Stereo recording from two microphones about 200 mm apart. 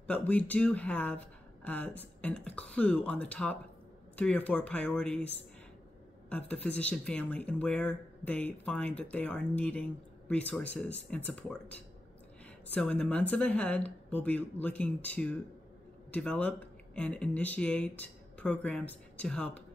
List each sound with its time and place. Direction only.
0.0 s speech: 5° left (ahead or behind)